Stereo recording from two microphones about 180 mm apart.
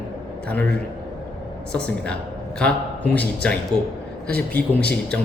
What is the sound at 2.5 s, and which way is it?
A man's voice, 5° left (ahead or behind).